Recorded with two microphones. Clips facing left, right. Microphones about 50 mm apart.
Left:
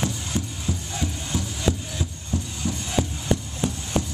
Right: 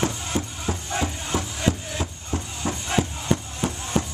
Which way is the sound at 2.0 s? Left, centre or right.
Right.